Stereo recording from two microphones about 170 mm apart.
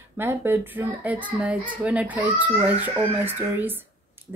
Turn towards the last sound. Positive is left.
turn(degrees=-10)  # may be behind; listen again after turning